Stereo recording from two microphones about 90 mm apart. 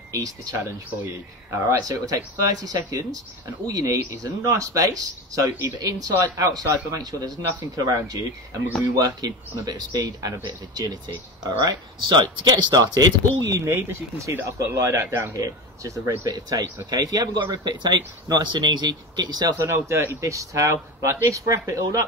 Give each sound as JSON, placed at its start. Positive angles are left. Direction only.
{"t": 0.1, "sound": "speech", "side_deg": -40}
{"t": 1.7, "sound": "speech", "side_deg": -40}
{"t": 13.4, "sound": "speech", "side_deg": -30}
{"t": 19.6, "sound": "speech", "side_deg": -30}